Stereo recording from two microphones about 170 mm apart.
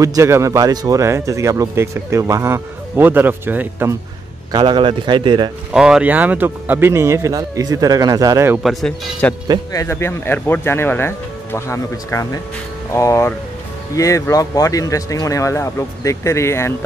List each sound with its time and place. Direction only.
0.0 s speech: 20° right (ahead or behind)
4.5 s speech: 25° right (ahead or behind)
5.7 s speech: 5° right (ahead or behind)
8.6 s speech: centre (ahead or behind)
9.7 s speech: 15° left (ahead or behind)